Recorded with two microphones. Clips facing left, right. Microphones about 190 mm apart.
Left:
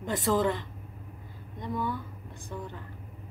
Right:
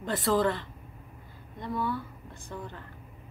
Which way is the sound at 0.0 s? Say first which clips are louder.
Even; 15° left (ahead or behind).